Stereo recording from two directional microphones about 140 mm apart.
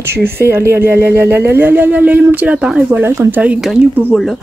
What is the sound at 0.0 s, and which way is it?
Speech, 15° right (ahead or behind).